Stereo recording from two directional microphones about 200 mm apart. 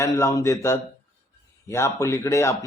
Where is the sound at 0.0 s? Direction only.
15° left (ahead or behind).